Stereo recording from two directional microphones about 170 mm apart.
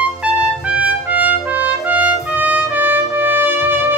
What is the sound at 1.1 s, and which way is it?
Music, 10° right (ahead or behind).